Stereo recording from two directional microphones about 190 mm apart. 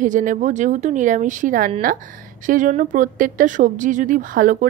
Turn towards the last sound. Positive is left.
turn(degrees=-45)  # may be behind; listen again after turning